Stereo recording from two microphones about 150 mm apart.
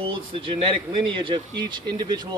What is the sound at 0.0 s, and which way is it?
Speech, 35° right (ahead or behind).